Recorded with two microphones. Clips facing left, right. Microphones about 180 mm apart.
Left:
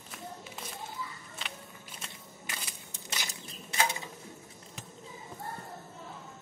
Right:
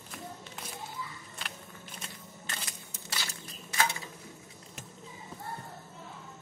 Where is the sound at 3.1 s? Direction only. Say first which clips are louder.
Even; 20° left (ahead or behind).